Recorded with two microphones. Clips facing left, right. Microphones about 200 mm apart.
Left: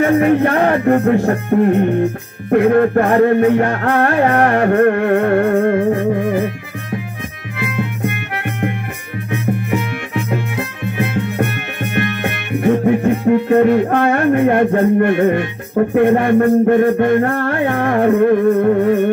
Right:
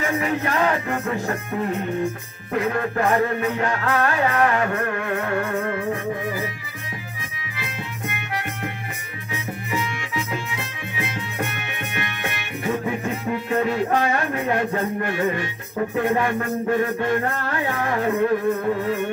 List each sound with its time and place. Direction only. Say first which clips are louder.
0.0 s music: left 11 dB; 60° left (ahead or behind)